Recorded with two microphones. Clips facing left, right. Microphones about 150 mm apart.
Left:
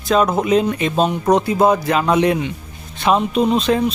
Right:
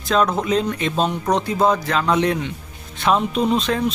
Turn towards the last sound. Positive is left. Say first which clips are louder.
# left 4 dB
turn(degrees=5)  # may be behind; listen again after turning